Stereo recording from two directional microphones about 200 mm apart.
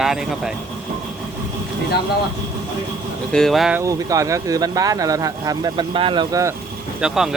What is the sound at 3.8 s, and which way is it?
Speech, 15° right (ahead or behind).